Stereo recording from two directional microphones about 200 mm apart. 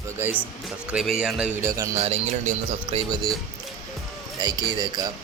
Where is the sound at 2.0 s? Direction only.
35° right (ahead or behind).